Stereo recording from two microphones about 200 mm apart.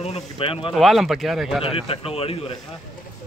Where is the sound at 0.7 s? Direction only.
Centre (ahead or behind).